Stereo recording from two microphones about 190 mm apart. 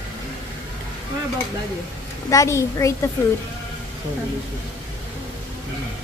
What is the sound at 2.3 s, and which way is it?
Speech, 15° left (ahead or behind).